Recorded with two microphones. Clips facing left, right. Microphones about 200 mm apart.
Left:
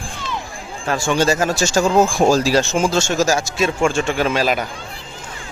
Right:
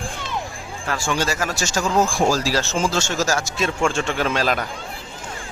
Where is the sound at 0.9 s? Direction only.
20° left (ahead or behind); by 4.6 s 5° left (ahead or behind).